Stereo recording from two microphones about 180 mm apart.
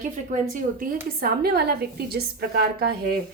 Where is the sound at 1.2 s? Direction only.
60° right (ahead or behind).